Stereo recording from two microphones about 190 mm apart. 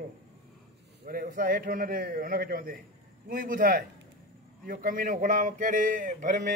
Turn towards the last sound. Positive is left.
turn(degrees=-40)  # may be behind; listen again after turning